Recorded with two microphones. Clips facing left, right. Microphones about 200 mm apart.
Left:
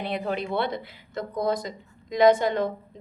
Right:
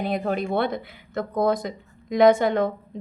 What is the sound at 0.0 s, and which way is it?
Speech, 45° right (ahead or behind).